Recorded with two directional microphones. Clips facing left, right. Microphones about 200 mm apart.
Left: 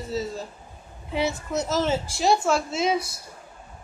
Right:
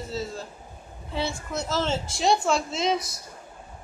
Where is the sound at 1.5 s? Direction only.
20° left (ahead or behind).